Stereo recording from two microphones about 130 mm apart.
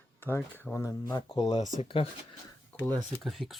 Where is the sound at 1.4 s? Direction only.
55° left (ahead or behind).